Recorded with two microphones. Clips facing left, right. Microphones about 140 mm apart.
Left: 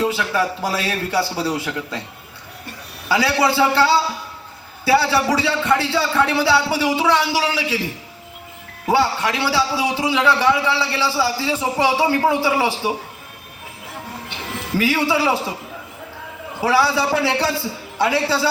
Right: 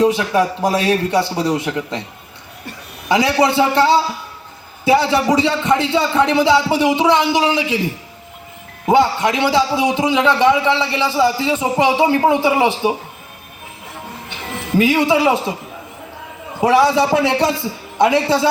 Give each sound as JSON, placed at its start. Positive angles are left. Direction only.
{"t": 0.0, "sound": "a man's voice", "side_deg": -20}
{"t": 3.1, "sound": "a man's voice", "side_deg": -15}
{"t": 8.9, "sound": "a man's voice", "side_deg": -15}
{"t": 14.8, "sound": "a man's voice", "side_deg": -15}
{"t": 16.6, "sound": "a man's voice", "side_deg": -20}